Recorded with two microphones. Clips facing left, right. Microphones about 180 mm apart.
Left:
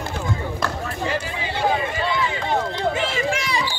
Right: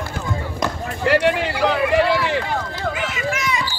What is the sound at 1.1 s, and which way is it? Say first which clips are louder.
Run: right 14 dB; 75° right (ahead or behind).